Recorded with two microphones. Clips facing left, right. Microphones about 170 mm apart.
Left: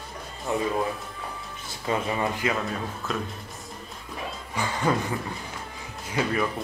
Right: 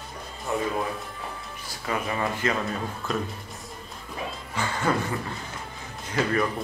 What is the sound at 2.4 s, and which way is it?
Speech, centre (ahead or behind).